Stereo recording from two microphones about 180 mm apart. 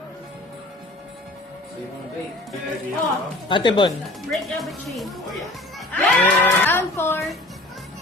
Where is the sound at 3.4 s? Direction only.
25° left (ahead or behind).